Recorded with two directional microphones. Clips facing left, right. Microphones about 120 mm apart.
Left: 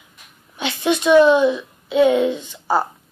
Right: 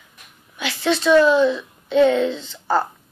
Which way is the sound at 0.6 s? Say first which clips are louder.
Left 1 dB; 20° left (ahead or behind).